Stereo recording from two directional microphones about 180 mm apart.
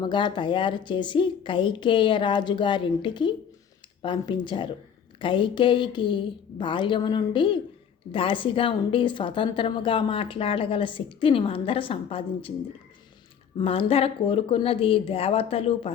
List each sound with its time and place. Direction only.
0.0 s a woman's voice: 25° left (ahead or behind)
13.6 s speech: 30° left (ahead or behind)